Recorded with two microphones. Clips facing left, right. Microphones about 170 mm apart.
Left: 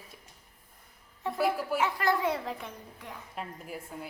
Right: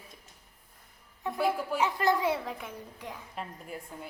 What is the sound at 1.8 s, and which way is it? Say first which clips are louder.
Speech: right 3 dB; 20° right (ahead or behind).